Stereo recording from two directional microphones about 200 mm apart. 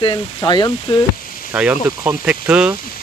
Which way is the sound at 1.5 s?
5° right (ahead or behind).